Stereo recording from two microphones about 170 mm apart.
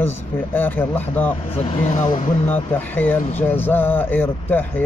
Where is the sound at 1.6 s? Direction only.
40° left (ahead or behind).